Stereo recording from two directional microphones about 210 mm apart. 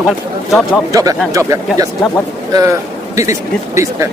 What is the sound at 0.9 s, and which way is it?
Speech, 15° right (ahead or behind).